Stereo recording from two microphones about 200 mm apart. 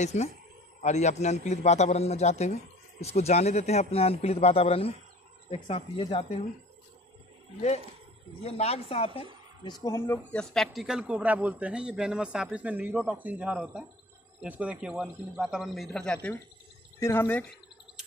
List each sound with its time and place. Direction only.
0.0 s a man's voice: 35° left (ahead or behind)
8.4 s speech: 30° left (ahead or behind)
9.8 s speech: 10° left (ahead or behind)